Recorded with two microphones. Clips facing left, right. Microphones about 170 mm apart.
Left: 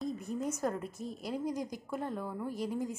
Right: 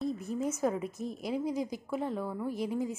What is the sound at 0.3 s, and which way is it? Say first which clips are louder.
A woman's voice: right 3 dB; 5° right (ahead or behind).